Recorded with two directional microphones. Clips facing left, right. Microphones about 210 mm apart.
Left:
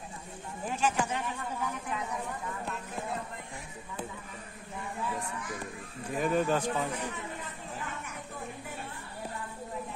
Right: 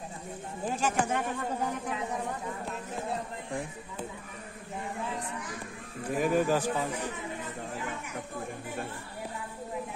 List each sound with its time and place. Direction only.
0.7 s speech: 50° right (ahead or behind)
6.1 s speech: 5° right (ahead or behind)